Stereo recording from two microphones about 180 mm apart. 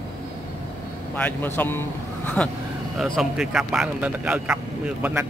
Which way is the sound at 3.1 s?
5° right (ahead or behind).